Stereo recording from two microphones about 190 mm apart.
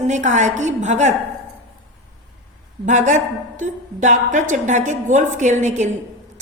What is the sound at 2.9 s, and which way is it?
A woman's voice, 40° right (ahead or behind).